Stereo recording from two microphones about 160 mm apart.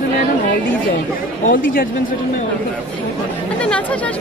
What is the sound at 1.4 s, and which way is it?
Speech, 60° left (ahead or behind).